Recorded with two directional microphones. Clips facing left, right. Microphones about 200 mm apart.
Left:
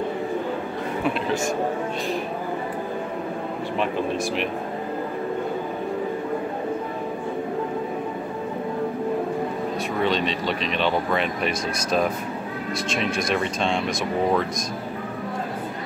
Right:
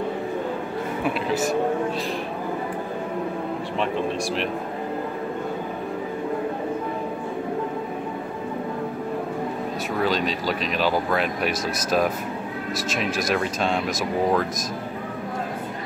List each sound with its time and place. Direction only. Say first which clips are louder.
1.0 s speech: even; 5° right (ahead or behind)
9.9 s speech: right 1 dB; centre (ahead or behind)